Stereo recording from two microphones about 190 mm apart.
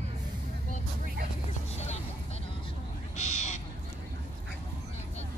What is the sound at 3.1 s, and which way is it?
Owl, 35° left (ahead or behind).